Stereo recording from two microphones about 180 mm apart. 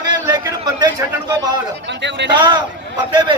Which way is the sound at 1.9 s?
80° right.